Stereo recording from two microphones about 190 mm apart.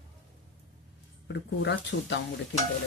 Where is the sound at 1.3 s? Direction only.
65° left (ahead or behind).